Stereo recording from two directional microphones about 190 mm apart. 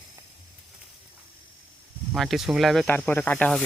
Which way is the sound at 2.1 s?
Centre (ahead or behind).